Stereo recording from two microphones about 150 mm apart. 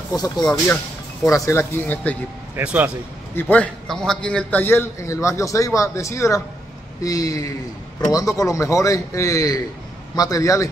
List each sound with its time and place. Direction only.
0.1 s a man's voice: 25° left (ahead or behind)
2.5 s speech: 10° right (ahead or behind)
3.3 s a man's voice: 10° left (ahead or behind)